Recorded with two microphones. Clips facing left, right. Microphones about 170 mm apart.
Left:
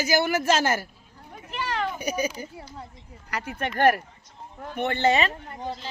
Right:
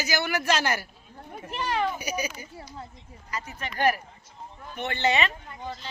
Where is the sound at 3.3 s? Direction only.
65° left (ahead or behind).